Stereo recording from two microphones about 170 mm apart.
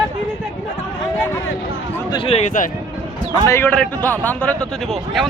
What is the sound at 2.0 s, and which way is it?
Speech, 30° left (ahead or behind).